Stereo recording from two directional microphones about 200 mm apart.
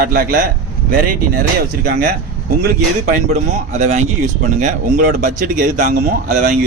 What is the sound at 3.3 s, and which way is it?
Speech, 35° right (ahead or behind).